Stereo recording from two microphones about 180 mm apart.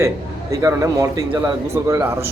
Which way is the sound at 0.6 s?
15° right (ahead or behind).